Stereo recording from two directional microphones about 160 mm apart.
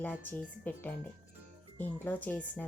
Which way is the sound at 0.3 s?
10° left (ahead or behind).